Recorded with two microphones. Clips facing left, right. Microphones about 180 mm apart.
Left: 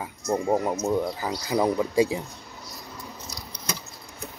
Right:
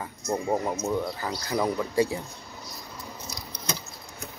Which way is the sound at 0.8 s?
15° left (ahead or behind).